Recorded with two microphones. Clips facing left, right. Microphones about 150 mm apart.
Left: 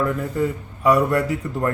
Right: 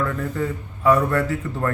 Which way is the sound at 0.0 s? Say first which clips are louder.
Left 3 dB; 15° left (ahead or behind).